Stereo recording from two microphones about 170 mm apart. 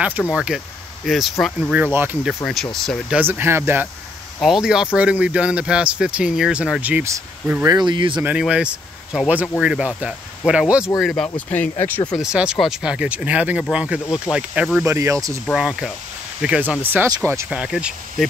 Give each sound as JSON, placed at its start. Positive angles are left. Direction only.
{"t": 0.3, "sound": "speech", "side_deg": -5}
{"t": 2.2, "sound": "speech", "side_deg": 0}
{"t": 3.2, "sound": "speech", "side_deg": -10}
{"t": 4.4, "sound": "speech", "side_deg": 0}
{"t": 7.7, "sound": "speech", "side_deg": -25}
{"t": 8.2, "sound": "speech", "side_deg": -5}
{"t": 12.1, "sound": "speech", "side_deg": -5}
{"t": 15.0, "sound": "speech", "side_deg": -20}
{"t": 15.5, "sound": "speech", "side_deg": -5}